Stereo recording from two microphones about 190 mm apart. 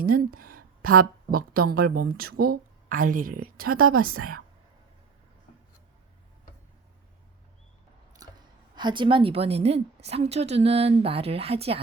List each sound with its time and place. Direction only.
0.0 s a woman's voice: 50° right (ahead or behind)
8.2 s a sound: 20° right (ahead or behind)
8.7 s a woman's voice: 25° right (ahead or behind)